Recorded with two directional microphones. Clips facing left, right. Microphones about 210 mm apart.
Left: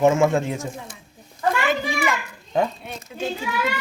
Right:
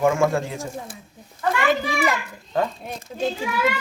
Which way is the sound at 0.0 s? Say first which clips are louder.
Left 2 dB; 20° left (ahead or behind).